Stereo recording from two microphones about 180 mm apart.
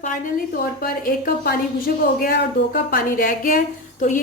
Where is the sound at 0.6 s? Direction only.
55° left (ahead or behind).